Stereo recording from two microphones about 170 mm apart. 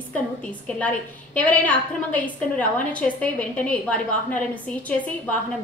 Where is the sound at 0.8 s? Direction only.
10° left (ahead or behind).